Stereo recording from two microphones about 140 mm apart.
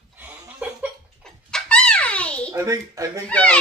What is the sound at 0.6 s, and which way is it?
Cough, 10° right (ahead or behind).